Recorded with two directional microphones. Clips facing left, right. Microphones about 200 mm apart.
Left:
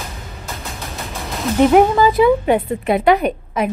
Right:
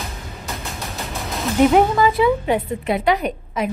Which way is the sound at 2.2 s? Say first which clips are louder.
Left 4 dB; 55° left (ahead or behind).